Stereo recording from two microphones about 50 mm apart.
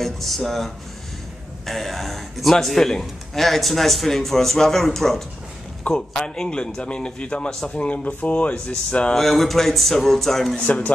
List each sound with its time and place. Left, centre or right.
0.0 s a man's voice: centre
5.9 s a man's voice: centre
9.1 s a man's voice: centre
10.6 s speech: left